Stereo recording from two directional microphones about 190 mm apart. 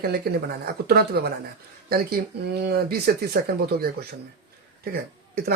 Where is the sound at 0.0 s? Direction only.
55° right (ahead or behind).